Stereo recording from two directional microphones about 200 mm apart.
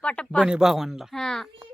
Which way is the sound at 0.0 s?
5° left (ahead or behind).